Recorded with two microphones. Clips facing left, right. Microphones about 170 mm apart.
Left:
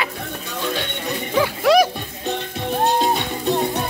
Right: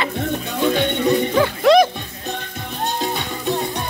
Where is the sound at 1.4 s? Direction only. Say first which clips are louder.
Even; 5° left (ahead or behind).